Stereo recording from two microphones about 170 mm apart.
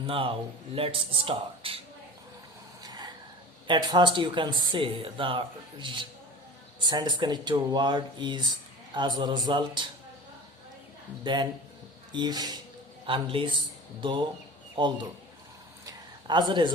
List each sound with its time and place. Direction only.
0.1 s speech: 30° right (ahead or behind)
3.7 s speech: 25° right (ahead or behind)
11.2 s speech: 25° right (ahead or behind)
15.9 s a sound: 25° right (ahead or behind)